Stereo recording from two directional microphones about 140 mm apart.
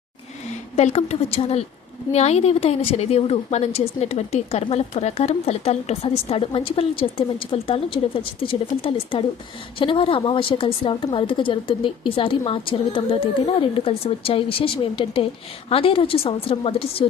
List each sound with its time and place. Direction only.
0.8 s a woman's voice: 50° left (ahead or behind)